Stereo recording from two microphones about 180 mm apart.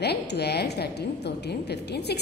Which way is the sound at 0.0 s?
65° left (ahead or behind).